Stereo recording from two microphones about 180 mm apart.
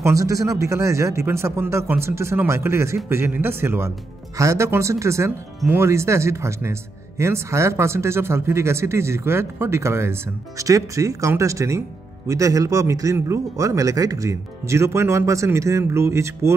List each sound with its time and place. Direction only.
0.0 s speech: 15° right (ahead or behind)